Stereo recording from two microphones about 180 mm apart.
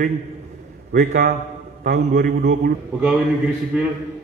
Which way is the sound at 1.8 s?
55° right (ahead or behind).